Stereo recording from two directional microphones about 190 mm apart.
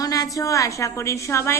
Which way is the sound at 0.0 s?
20° left (ahead or behind).